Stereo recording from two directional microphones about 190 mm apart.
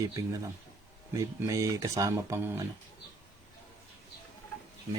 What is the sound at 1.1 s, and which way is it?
Speech, 15° right (ahead or behind).